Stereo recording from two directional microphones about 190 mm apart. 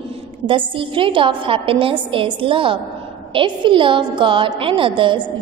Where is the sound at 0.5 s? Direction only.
25° right (ahead or behind).